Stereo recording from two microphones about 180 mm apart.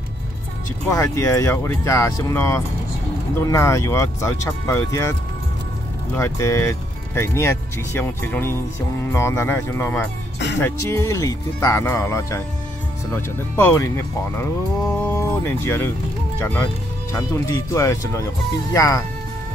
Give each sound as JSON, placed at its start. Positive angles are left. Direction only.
{"t": 0.8, "sound": "speech", "side_deg": 15}
{"t": 6.1, "sound": "speech", "side_deg": 15}
{"t": 13.6, "sound": "speech", "side_deg": 15}
{"t": 14.9, "sound": "speech", "side_deg": 10}